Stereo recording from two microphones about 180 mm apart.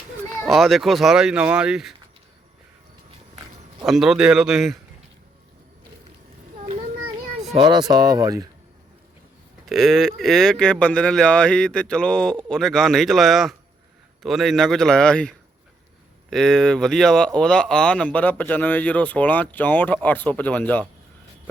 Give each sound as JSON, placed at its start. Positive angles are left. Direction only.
{"t": 0.4, "sound": "speech", "side_deg": 0}
{"t": 3.8, "sound": "speech", "side_deg": 0}
{"t": 7.5, "sound": "speech", "side_deg": -25}
{"t": 9.6, "sound": "speech", "side_deg": 0}
{"t": 16.3, "sound": "speech", "side_deg": 5}